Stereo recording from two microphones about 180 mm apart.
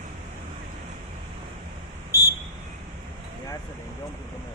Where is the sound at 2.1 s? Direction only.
15° left (ahead or behind).